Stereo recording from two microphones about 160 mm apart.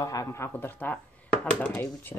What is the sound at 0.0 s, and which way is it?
Speech, 20° left (ahead or behind).